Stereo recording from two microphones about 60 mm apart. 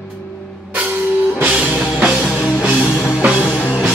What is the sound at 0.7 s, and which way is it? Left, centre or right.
Music, right.